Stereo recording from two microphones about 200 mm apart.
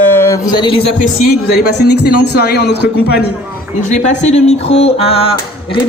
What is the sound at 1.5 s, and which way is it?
A man's voice, 55° left (ahead or behind).